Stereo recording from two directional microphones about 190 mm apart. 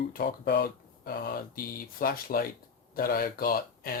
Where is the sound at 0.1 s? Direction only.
50° left (ahead or behind).